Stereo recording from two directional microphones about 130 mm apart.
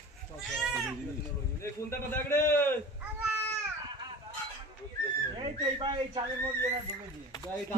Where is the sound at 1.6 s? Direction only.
20° left (ahead or behind).